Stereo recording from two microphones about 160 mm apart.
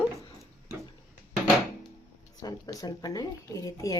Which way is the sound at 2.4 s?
20° left (ahead or behind).